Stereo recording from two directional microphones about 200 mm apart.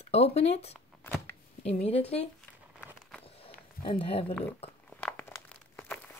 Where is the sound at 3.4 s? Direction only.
25° left (ahead or behind).